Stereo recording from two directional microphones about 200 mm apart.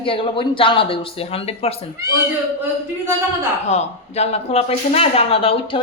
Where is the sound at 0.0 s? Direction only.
25° left (ahead or behind).